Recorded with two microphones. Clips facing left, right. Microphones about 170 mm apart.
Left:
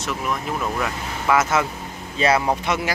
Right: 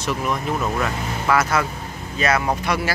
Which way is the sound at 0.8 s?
20° left (ahead or behind).